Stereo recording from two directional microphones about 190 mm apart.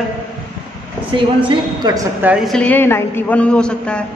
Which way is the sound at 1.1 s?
25° right (ahead or behind).